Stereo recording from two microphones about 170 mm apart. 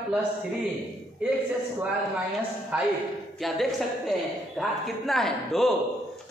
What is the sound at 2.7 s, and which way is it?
A man's voice, 5° right (ahead or behind).